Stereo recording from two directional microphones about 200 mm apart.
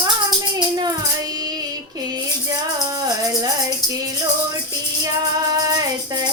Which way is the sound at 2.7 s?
20° right (ahead or behind).